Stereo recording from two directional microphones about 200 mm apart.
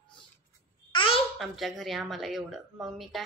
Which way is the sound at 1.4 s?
Centre (ahead or behind).